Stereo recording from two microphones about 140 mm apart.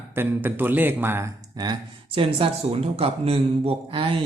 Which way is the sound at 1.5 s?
30° right (ahead or behind).